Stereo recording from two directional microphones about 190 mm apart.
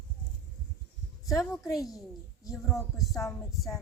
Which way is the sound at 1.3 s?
15° left (ahead or behind).